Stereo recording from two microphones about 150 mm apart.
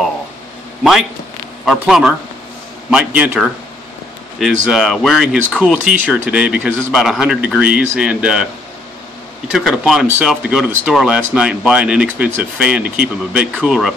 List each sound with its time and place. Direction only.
1.7 s speech: 5° right (ahead or behind)
9.5 s speech: centre (ahead or behind)